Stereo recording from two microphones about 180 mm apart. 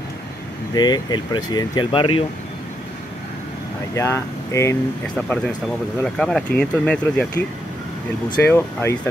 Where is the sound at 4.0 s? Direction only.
15° left (ahead or behind).